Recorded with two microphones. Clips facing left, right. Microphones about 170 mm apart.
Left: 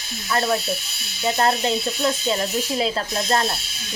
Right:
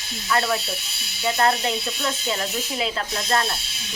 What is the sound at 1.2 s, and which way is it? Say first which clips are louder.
Speech: left 1 dB; 30° left (ahead or behind).